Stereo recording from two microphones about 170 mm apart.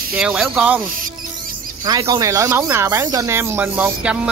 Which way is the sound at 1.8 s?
25° right (ahead or behind).